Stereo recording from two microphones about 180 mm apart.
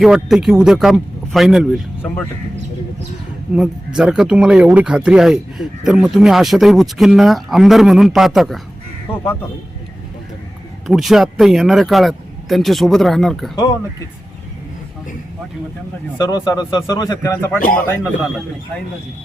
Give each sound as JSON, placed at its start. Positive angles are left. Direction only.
{"t": 0.0, "sound": "speech", "side_deg": 0}
{"t": 3.5, "sound": "speech", "side_deg": -5}
{"t": 10.8, "sound": "speech", "side_deg": 0}
{"t": 16.1, "sound": "a man's voice", "side_deg": 20}
{"t": 17.6, "sound": "a man's voice", "side_deg": 50}